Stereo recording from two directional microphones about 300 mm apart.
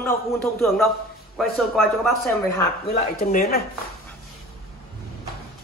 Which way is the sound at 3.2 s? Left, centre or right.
Left.